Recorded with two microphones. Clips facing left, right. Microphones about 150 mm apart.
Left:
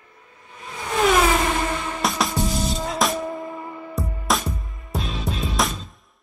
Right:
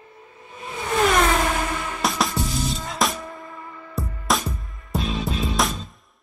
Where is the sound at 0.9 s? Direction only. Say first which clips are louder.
Left 1 dB; centre (ahead or behind).